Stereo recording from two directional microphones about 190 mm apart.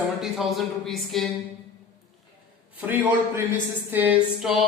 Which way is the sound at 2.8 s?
10° right (ahead or behind).